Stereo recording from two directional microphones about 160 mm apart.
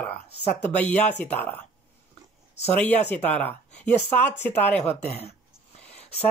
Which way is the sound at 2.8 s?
10° left (ahead or behind).